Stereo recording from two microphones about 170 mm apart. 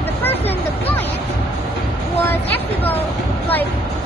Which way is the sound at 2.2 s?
10° left (ahead or behind).